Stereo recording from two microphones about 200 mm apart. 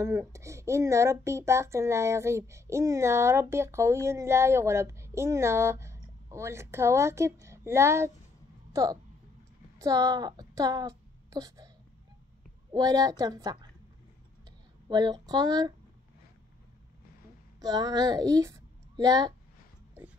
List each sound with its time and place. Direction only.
0.0 s speech: 15° right (ahead or behind)
9.8 s a woman's voice: 15° right (ahead or behind)
12.7 s a woman's voice: 20° right (ahead or behind)
14.9 s a woman's voice: 20° right (ahead or behind)
17.6 s a woman's voice: 20° right (ahead or behind)